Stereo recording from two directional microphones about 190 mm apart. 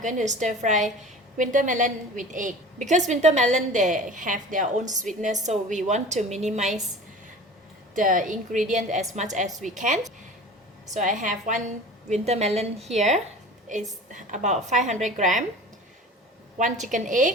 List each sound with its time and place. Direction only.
0.0 s a woman's voice: 40° right (ahead or behind)
7.9 s a woman's voice: 45° right (ahead or behind)
10.9 s a woman's voice: 40° right (ahead or behind)
16.6 s a woman's voice: 40° right (ahead or behind)